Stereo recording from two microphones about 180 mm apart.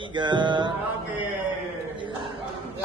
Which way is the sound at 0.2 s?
25° right (ahead or behind).